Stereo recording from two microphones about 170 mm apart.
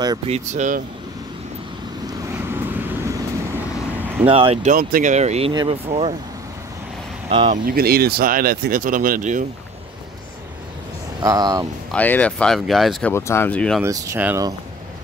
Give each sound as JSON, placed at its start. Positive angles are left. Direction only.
{"t": 0.3, "sound": "speech", "side_deg": -45}
{"t": 2.4, "sound": "vehicle", "side_deg": -15}
{"t": 4.3, "sound": "speech", "side_deg": -30}
{"t": 4.6, "sound": "speech", "side_deg": -50}
{"t": 5.5, "sound": "speech", "side_deg": -25}
{"t": 5.9, "sound": "speech", "side_deg": -35}
{"t": 7.2, "sound": "speech", "side_deg": -30}
{"t": 7.5, "sound": "speech", "side_deg": -60}
{"t": 11.1, "sound": "speech", "side_deg": -25}
{"t": 11.9, "sound": "speech", "side_deg": 10}
{"t": 13.1, "sound": "speech", "side_deg": 15}
{"t": 13.8, "sound": "speech", "side_deg": -20}